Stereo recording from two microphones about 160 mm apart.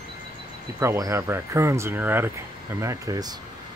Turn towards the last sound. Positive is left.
turn(degrees=-20)  # may be behind; listen again after turning